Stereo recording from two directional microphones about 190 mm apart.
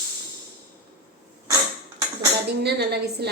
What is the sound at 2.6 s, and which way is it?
Speech, 60° right (ahead or behind).